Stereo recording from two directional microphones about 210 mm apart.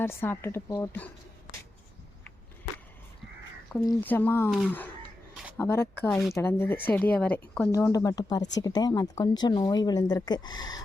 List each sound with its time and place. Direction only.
0.0 s speech: 10° left (ahead or behind)
3.7 s speech: 10° left (ahead or behind)
5.3 s a sound: centre (ahead or behind)
5.5 s speech: 10° left (ahead or behind)